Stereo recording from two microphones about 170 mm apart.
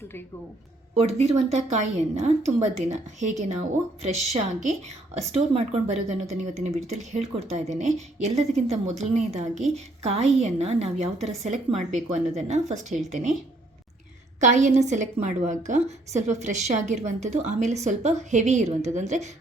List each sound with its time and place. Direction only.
0.9 s a woman's voice: 40° right (ahead or behind)
14.4 s a woman's voice: 45° right (ahead or behind)